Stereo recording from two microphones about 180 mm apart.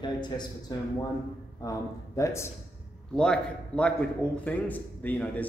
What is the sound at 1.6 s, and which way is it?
Speech, 20° left (ahead or behind).